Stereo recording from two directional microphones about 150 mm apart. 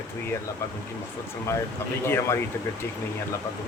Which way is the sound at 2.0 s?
15° left (ahead or behind).